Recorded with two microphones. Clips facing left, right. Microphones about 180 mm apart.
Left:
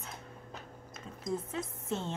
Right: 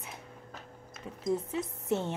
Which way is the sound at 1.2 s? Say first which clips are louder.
Right 5 dB; 20° right (ahead or behind).